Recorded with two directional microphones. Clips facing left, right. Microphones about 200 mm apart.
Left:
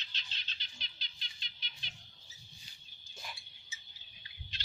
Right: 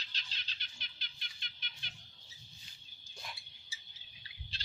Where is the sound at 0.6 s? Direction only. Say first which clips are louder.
Left 1 dB; 55° right (ahead or behind).